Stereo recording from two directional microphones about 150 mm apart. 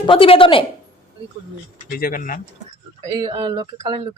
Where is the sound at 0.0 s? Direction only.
35° left (ahead or behind).